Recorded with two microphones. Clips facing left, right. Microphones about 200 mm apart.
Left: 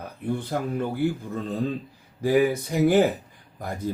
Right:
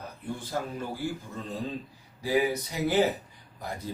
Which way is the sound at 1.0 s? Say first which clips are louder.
Left 8 dB; 60° left (ahead or behind).